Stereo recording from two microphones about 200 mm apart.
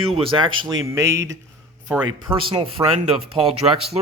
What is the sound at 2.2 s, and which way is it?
Speech, 25° right (ahead or behind).